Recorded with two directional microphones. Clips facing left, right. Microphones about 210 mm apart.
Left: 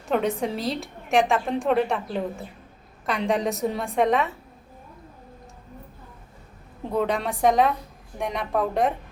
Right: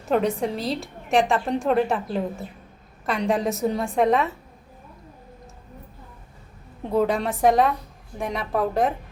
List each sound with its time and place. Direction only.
0.0 s a woman's voice: centre (ahead or behind)
6.9 s a woman's voice: 5° right (ahead or behind)